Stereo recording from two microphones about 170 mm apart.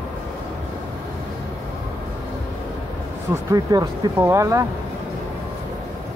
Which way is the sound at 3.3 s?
20° right (ahead or behind).